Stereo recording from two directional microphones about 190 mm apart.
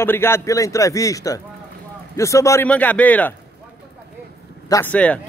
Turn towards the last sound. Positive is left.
turn(degrees=5)  # may be behind; listen again after turning